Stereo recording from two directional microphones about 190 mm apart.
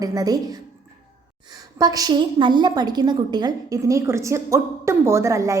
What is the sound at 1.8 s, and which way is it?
A woman's voice, 20° right (ahead or behind).